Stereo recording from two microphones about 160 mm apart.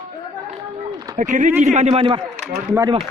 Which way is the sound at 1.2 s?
50° right (ahead or behind).